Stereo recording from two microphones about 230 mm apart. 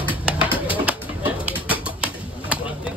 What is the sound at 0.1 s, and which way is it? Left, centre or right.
Bird, centre.